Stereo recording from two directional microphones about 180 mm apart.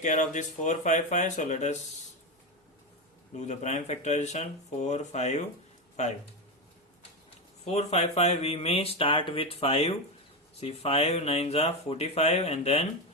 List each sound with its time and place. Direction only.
0.0 s speech: 45° left (ahead or behind)
3.3 s speech: 40° left (ahead or behind)
7.6 s speech: 35° left (ahead or behind)